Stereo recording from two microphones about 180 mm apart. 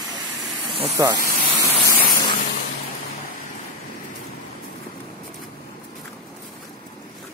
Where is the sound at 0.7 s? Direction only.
30° right (ahead or behind).